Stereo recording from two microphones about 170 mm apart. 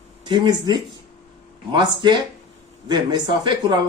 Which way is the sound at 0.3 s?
25° right (ahead or behind).